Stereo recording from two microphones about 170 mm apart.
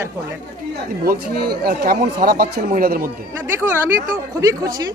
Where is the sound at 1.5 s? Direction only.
60° right (ahead or behind).